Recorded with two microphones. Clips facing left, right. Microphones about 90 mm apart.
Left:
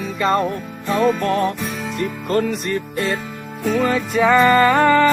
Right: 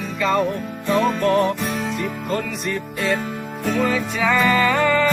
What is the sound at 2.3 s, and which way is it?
Music, 55° left (ahead or behind).